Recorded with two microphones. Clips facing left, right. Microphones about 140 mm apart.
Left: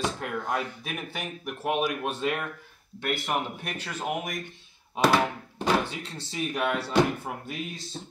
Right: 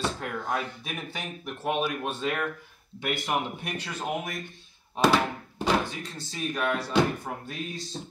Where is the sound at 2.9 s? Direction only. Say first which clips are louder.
Even; 5° right (ahead or behind).